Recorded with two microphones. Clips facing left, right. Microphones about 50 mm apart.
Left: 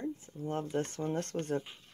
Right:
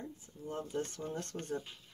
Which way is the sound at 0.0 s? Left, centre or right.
Left.